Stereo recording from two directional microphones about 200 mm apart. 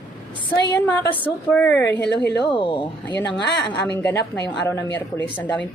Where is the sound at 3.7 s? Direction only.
5° left (ahead or behind).